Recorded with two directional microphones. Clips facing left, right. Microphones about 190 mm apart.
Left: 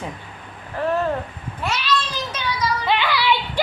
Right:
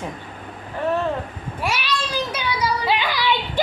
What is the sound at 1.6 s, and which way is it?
Children playing, 10° right (ahead or behind).